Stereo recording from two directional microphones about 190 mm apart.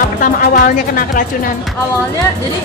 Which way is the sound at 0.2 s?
50° left (ahead or behind).